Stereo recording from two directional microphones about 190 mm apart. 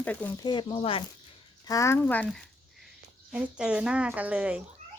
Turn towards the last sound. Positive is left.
turn(degrees=-5)  # may be behind; listen again after turning